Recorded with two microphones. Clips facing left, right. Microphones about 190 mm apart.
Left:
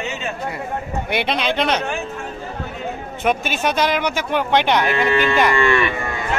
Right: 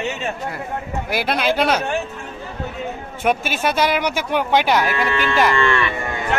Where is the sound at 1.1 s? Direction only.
5° right (ahead or behind).